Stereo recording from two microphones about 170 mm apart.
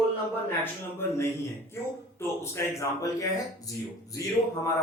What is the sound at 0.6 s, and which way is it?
Speech, 15° left (ahead or behind).